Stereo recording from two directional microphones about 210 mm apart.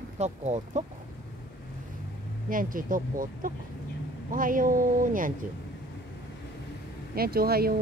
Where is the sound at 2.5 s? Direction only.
40° right (ahead or behind).